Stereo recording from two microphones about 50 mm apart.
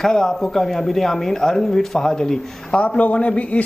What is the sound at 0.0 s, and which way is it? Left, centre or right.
A man's voice, centre.